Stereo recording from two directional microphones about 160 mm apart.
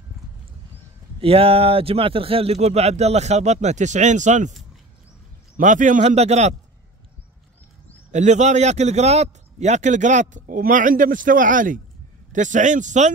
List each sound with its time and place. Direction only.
1.2 s speech: 35° right (ahead or behind)
5.6 s a man's voice: 55° right (ahead or behind)
8.1 s a man's voice: 45° right (ahead or behind)